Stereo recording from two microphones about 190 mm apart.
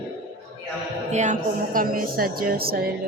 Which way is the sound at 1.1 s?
40° right (ahead or behind).